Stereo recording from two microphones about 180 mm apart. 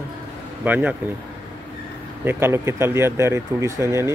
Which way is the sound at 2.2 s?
15° right (ahead or behind).